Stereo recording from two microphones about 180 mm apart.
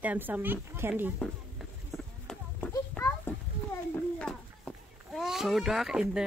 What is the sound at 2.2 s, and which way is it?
Run, 5° left (ahead or behind).